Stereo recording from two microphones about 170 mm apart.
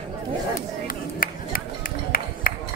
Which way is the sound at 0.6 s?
55° left (ahead or behind).